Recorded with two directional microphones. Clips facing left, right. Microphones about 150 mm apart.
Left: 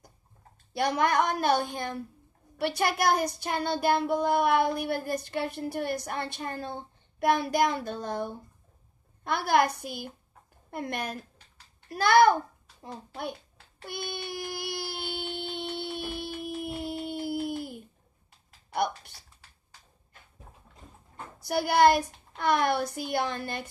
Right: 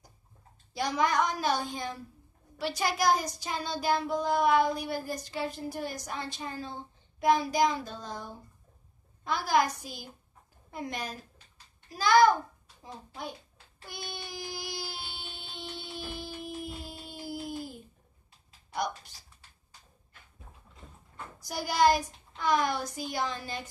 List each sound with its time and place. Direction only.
0.7 s child singing: 60° left (ahead or behind)
13.7 s a sound: 60° left (ahead or behind)
18.7 s child singing: 60° left (ahead or behind)
21.4 s child singing: 60° left (ahead or behind)